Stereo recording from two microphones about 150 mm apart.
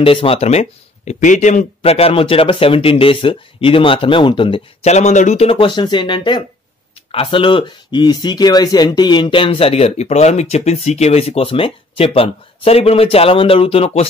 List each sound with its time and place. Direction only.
0.0 s speech: 35° left (ahead or behind)
4.9 s speech: 50° left (ahead or behind)